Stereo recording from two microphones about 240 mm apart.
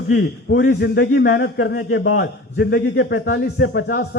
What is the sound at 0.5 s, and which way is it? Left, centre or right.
A man's voice, left.